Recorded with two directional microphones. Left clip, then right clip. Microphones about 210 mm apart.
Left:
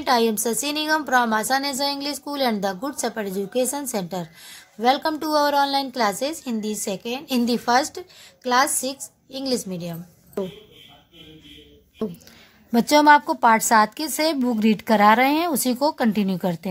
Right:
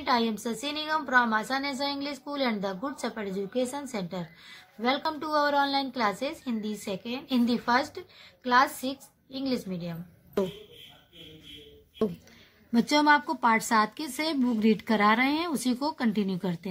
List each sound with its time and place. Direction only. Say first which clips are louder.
0.0 s a woman's voice: left 7 dB; 45° left (ahead or behind)
12.0 s speech: even; centre (ahead or behind)
12.7 s a woman's voice: left 8 dB; 45° left (ahead or behind)